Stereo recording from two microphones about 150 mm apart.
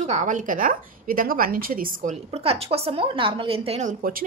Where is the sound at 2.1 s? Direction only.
45° right (ahead or behind); by 4.3 s 70° right (ahead or behind).